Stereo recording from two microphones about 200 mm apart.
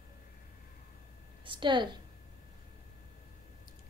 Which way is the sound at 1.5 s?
25° right (ahead or behind).